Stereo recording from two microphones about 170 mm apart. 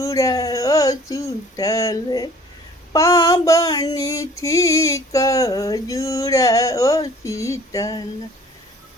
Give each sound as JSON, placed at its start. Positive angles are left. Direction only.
{"t": 0.0, "sound": "female singing", "side_deg": 20}